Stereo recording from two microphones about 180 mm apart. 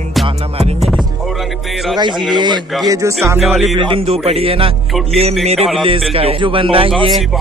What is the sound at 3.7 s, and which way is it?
A man's voice, 30° right (ahead or behind).